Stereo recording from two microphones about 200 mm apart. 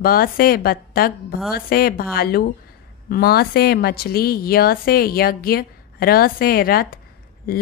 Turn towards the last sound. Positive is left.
turn(degrees=50)  # may be behind; listen again after turning